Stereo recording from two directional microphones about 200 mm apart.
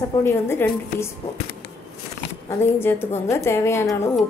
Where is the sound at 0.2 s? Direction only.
10° left (ahead or behind).